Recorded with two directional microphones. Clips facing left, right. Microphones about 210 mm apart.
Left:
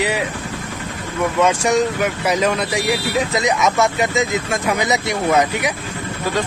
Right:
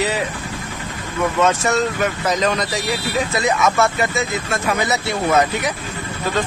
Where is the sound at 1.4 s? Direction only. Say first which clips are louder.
Left 2 dB; 15° left (ahead or behind).